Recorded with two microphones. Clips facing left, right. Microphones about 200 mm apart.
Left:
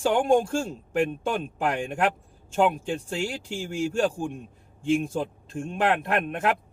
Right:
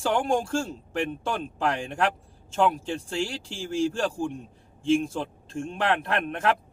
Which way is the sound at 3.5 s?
15° left (ahead or behind).